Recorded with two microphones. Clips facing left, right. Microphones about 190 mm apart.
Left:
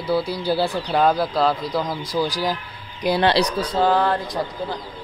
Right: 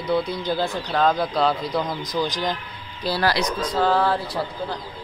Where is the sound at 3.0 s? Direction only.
20° left (ahead or behind).